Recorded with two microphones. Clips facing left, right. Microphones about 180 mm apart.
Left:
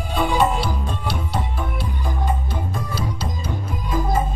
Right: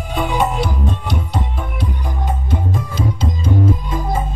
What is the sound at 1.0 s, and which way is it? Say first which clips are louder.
Music: right 2 dB; 20° right (ahead or behind).